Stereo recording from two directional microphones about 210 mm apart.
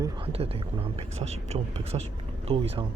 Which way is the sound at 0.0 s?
25° right (ahead or behind).